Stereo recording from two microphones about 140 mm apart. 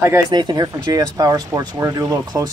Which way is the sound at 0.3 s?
30° right (ahead or behind).